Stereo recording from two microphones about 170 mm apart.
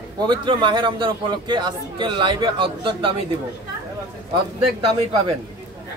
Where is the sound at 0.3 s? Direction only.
30° right (ahead or behind).